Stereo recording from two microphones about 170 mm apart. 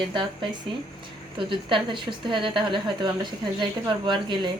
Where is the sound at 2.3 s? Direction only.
Centre (ahead or behind).